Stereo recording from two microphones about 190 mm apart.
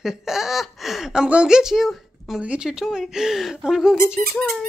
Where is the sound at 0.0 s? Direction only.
Centre (ahead or behind).